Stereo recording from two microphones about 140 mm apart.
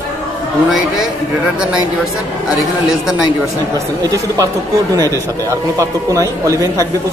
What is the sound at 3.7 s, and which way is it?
Speech, 25° right (ahead or behind).